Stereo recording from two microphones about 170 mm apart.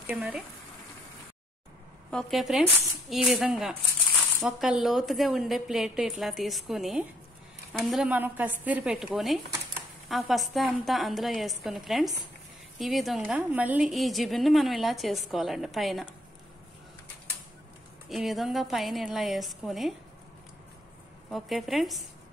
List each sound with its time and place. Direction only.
0.1 s a woman's voice: 5° right (ahead or behind)
2.0 s a woman's voice: centre (ahead or behind)
18.1 s a woman's voice: centre (ahead or behind)
21.3 s a woman's voice: centre (ahead or behind)